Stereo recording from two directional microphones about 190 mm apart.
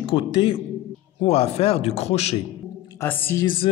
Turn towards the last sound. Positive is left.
turn(degrees=10)  # may be behind; listen again after turning